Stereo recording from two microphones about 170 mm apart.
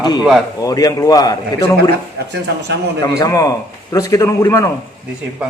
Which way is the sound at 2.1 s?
90° right.